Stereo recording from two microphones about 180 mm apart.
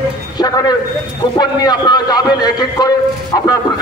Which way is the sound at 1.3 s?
20° left (ahead or behind).